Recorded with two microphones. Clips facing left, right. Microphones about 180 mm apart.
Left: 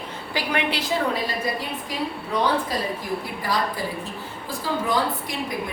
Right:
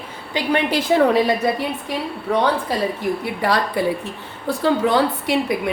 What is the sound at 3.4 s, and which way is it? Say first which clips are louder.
A woman's voice: right 8 dB; 70° right (ahead or behind).